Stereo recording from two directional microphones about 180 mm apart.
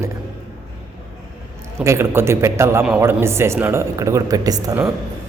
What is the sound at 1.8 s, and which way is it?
Speech, 15° right (ahead or behind).